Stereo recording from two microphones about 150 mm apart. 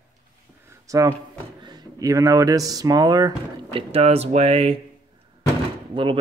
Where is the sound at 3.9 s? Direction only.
40° right (ahead or behind).